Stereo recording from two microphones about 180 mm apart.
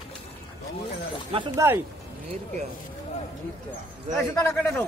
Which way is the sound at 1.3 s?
30° right (ahead or behind).